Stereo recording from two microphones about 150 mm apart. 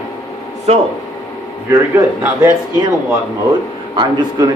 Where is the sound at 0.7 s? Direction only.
45° right (ahead or behind).